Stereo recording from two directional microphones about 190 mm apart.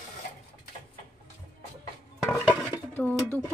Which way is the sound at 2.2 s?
5° left (ahead or behind).